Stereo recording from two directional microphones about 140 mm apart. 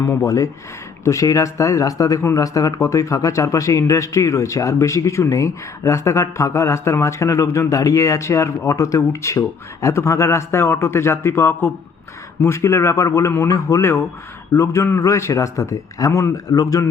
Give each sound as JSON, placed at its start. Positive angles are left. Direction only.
{"t": 0.3, "sound": "a man's voice", "side_deg": 25}